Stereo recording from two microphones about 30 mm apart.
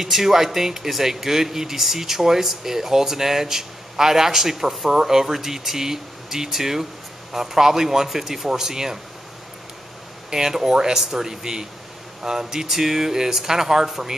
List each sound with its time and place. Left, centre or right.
0.0 s speech: centre
10.3 s speech: centre